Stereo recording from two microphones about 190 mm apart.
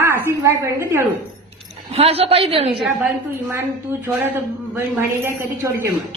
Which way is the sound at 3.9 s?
10° right (ahead or behind).